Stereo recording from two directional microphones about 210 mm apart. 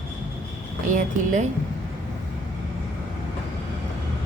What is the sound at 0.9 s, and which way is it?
Speech, 35° right (ahead or behind).